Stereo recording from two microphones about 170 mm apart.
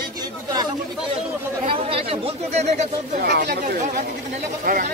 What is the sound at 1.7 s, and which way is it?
Speech, 35° right (ahead or behind).